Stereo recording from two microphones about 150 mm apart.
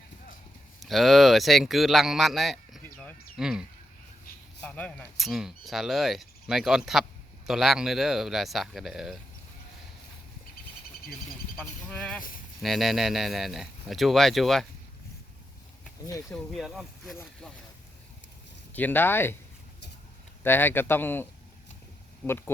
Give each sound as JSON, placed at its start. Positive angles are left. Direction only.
{"t": 0.8, "sound": "speech", "side_deg": 0}
{"t": 2.8, "sound": "a sound", "side_deg": 10}
{"t": 3.3, "sound": "speech", "side_deg": -5}
{"t": 4.6, "sound": "speech", "side_deg": 5}
{"t": 11.5, "sound": "speech", "side_deg": 0}
{"t": 16.3, "sound": "speech", "side_deg": 0}
{"t": 18.7, "sound": "a man's voice", "side_deg": 10}
{"t": 20.4, "sound": "a man's voice", "side_deg": 15}
{"t": 22.3, "sound": "a man's voice", "side_deg": 15}